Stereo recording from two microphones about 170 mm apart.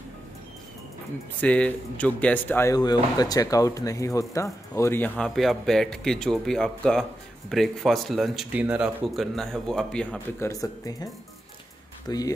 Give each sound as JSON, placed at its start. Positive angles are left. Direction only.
{"t": 1.4, "sound": "speech", "side_deg": 10}
{"t": 10.4, "sound": "speech", "side_deg": 20}
{"t": 12.1, "sound": "speech", "side_deg": 25}